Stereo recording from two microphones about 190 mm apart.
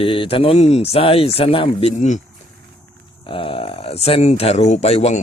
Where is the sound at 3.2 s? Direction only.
25° left (ahead or behind).